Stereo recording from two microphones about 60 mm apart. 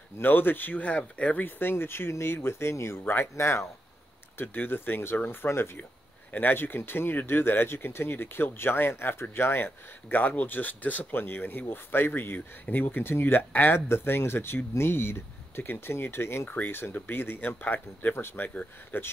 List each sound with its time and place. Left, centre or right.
0.2 s speech: left
1.4 s speech: left
4.4 s speech: left
16.4 s speech: left
18.1 s speech: left
18.5 s speech: left